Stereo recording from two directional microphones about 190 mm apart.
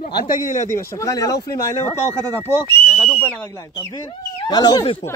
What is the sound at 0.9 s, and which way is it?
Speech, 20° left (ahead or behind).